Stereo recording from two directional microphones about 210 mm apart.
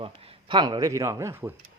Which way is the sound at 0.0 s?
25° right (ahead or behind).